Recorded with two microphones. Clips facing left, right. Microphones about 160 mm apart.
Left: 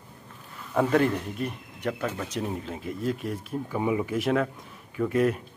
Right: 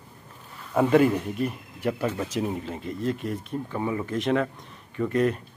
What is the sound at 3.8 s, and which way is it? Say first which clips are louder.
A man's voice: left 2 dB; 15° left (ahead or behind).